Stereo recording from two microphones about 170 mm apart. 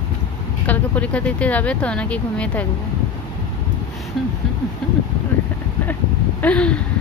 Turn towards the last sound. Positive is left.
turn(degrees=5)  # may be behind; listen again after turning